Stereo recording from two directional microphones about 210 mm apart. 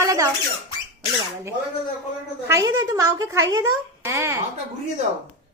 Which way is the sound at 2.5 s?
15° right (ahead or behind).